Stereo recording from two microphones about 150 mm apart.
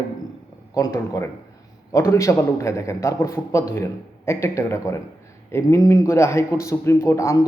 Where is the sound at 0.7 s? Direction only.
20° left (ahead or behind).